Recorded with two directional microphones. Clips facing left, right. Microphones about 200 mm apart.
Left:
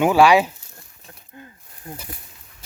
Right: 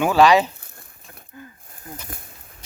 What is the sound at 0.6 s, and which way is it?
Crumpling, 55° right (ahead or behind).